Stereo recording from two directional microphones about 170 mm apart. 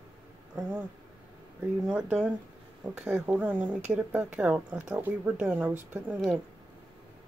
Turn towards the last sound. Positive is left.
turn(degrees=-10)  # may be behind; listen again after turning